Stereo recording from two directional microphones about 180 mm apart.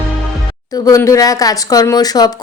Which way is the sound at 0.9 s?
20° left (ahead or behind).